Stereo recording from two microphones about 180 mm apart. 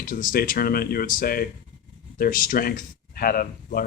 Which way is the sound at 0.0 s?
50° left (ahead or behind).